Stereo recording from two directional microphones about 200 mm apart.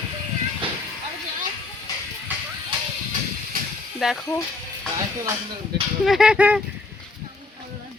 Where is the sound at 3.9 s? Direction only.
Centre (ahead or behind).